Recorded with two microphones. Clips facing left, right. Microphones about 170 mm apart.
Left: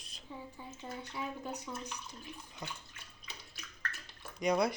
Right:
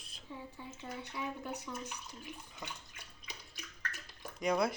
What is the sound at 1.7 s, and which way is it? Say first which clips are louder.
Speech: even; 15° left (ahead or behind).